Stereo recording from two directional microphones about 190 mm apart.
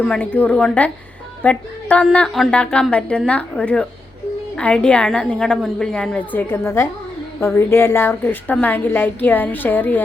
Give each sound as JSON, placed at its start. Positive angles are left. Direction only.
{"t": 0.0, "sound": "a woman's voice", "side_deg": 5}